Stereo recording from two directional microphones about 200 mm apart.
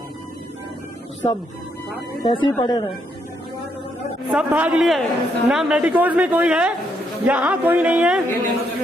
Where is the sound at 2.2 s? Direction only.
25° left (ahead or behind).